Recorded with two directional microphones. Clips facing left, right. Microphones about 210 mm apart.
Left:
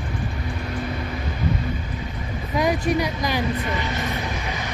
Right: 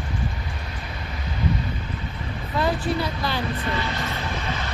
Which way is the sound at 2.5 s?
15° left (ahead or behind).